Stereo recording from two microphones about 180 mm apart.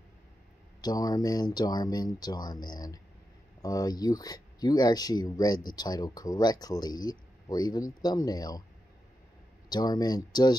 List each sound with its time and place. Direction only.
0.7 s speech: 20° left (ahead or behind)
9.7 s speech: 20° left (ahead or behind)